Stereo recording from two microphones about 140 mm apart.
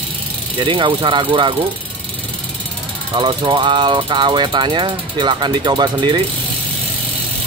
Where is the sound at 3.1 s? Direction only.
35° right (ahead or behind).